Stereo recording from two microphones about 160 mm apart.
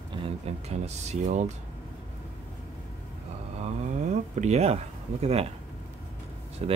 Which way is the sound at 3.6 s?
45° right (ahead or behind).